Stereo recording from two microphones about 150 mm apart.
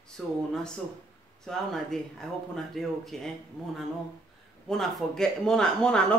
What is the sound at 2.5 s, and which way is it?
Speech, centre (ahead or behind).